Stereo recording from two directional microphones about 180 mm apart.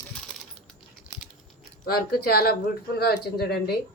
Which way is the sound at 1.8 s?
55° left (ahead or behind).